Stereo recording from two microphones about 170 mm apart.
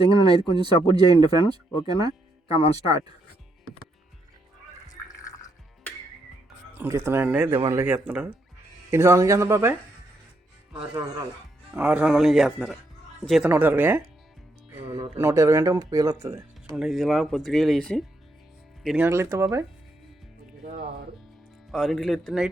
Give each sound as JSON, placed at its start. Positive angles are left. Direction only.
{"t": 0.1, "sound": "speech", "side_deg": -25}
{"t": 2.5, "sound": "speech", "side_deg": 35}
{"t": 6.7, "sound": "speech", "side_deg": -15}
{"t": 11.7, "sound": "speech", "side_deg": -10}
{"t": 13.5, "sound": "speech", "side_deg": -10}
{"t": 15.2, "sound": "speech", "side_deg": -15}
{"t": 16.7, "sound": "speech", "side_deg": 0}
{"t": 19.0, "sound": "speech", "side_deg": -15}
{"t": 21.7, "sound": "speech", "side_deg": 0}